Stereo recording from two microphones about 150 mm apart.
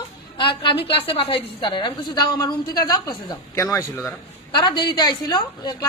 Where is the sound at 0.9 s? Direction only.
40° left (ahead or behind).